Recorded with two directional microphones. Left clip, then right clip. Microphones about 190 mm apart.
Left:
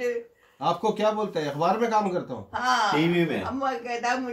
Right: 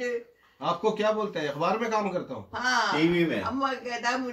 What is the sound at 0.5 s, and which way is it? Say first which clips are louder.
A man's voice: left 2 dB; 60° left (ahead or behind).